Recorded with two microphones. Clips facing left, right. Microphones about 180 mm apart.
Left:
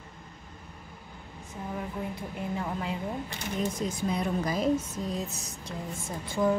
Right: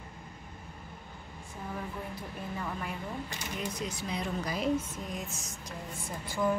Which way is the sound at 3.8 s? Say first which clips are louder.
Left 6 dB; 50° left (ahead or behind).